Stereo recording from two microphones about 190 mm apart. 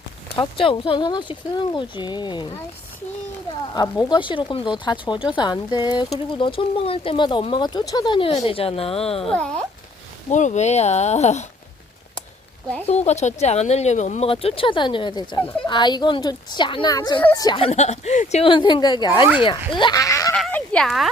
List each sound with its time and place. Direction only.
0.3 s speech: 30° left (ahead or behind)
3.8 s speech: 20° left (ahead or behind)
9.2 s a child's voice: 5° left (ahead or behind)
10.2 s speech: 40° left (ahead or behind)
12.9 s speech: 35° left (ahead or behind); by 20.3 s 15° left (ahead or behind)
20.3 s sheep: 5° left (ahead or behind)